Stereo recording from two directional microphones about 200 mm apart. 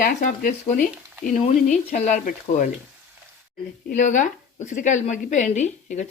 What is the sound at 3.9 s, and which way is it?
Speech, 40° left (ahead or behind).